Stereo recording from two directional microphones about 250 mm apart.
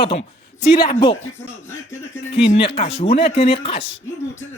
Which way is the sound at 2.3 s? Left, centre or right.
Left.